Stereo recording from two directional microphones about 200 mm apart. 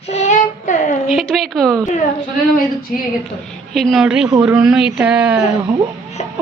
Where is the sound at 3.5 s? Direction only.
Centre (ahead or behind).